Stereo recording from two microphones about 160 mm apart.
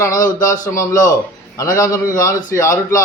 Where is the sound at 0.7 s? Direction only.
20° left (ahead or behind).